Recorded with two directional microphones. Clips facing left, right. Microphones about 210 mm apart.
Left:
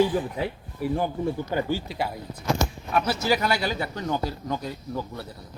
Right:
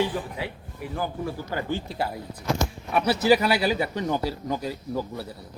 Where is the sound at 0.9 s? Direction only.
25° left (ahead or behind).